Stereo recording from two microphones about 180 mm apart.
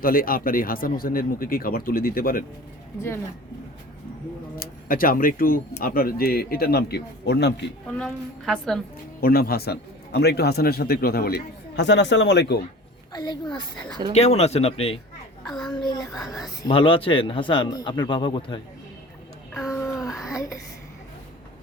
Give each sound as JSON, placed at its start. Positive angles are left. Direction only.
{"t": 0.0, "sound": "speech", "side_deg": 55}
{"t": 4.5, "sound": "a man's voice", "side_deg": 55}
{"t": 7.9, "sound": "a woman's voice", "side_deg": 5}
{"t": 9.2, "sound": "a man's voice", "side_deg": 55}
{"t": 13.1, "sound": "a man's voice", "side_deg": 25}
{"t": 14.1, "sound": "speech", "side_deg": 35}
{"t": 15.7, "sound": "a man's voice", "side_deg": 25}
{"t": 19.7, "sound": "a sound", "side_deg": 15}